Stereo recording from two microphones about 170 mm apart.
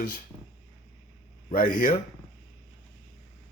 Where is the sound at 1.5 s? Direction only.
55° left (ahead or behind).